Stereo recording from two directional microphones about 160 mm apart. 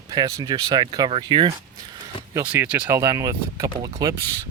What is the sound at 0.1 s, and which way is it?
Speech, 25° right (ahead or behind).